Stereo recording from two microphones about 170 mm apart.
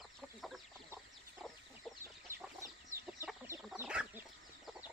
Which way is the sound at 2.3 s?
15° right (ahead or behind).